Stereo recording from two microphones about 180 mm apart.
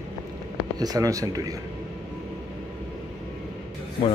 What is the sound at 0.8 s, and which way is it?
Speech, 20° right (ahead or behind).